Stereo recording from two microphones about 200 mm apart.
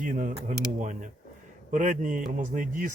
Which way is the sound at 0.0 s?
40° right (ahead or behind).